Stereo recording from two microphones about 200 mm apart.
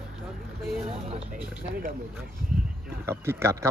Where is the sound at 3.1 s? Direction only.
15° right (ahead or behind).